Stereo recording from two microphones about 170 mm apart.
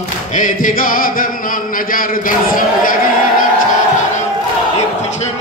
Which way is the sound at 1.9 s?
55° left (ahead or behind).